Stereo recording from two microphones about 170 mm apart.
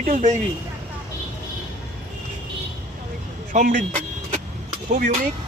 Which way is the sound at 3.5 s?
50° right (ahead or behind).